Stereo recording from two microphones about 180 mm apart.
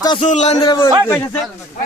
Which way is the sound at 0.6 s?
25° left (ahead or behind).